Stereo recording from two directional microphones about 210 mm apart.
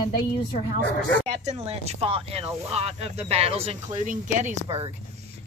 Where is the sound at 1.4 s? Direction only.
30° right (ahead or behind).